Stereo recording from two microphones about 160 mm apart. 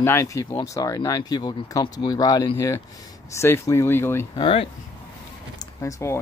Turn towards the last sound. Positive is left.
turn(degrees=20)  # may be behind; listen again after turning